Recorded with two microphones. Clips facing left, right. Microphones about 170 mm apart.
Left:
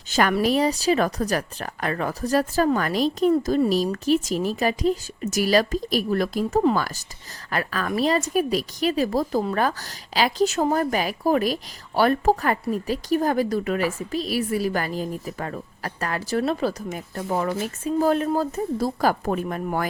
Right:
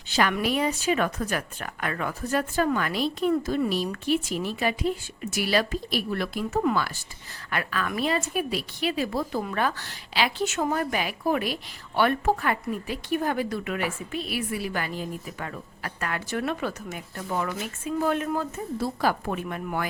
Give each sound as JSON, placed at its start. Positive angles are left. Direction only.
{"t": 0.1, "sound": "a woman's voice", "side_deg": 45}